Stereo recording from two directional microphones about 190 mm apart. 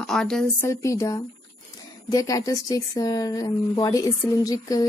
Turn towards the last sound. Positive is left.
turn(degrees=20)  # may be behind; listen again after turning